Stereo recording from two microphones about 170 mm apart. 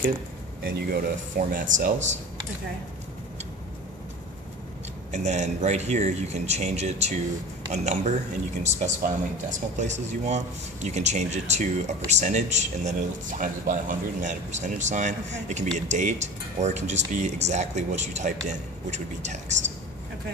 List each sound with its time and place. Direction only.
0.7 s speech: 65° right (ahead or behind)
5.1 s speech: 45° right (ahead or behind)